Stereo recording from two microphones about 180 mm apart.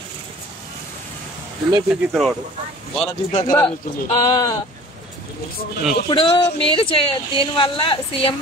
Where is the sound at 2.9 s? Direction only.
35° left (ahead or behind).